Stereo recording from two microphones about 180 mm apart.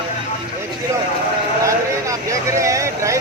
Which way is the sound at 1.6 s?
15° right (ahead or behind).